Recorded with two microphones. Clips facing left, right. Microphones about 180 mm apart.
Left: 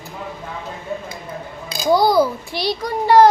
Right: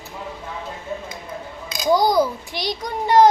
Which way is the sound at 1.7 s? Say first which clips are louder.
Left 1 dB; 30° left (ahead or behind).